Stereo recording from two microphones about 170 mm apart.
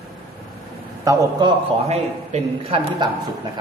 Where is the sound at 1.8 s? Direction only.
40° right (ahead or behind).